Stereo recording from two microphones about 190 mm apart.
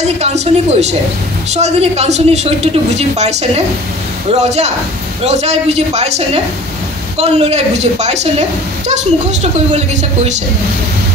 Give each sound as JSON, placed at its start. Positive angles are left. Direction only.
{"t": 0.2, "sound": "a woman's voice", "side_deg": -35}